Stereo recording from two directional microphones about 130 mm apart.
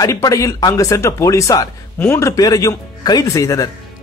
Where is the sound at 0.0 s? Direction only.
25° left (ahead or behind).